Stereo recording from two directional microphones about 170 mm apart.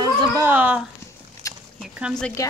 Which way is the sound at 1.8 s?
5° right (ahead or behind).